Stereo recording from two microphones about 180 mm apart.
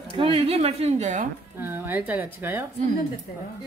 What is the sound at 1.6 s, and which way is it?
A woman's voice, 10° right (ahead or behind).